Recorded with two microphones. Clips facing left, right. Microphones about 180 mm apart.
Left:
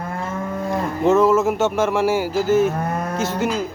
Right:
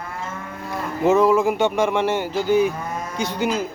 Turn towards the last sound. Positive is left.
turn(degrees=0)  # may be behind; listen again after turning